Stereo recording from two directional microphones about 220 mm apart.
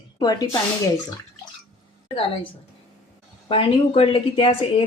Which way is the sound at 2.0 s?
25° left (ahead or behind).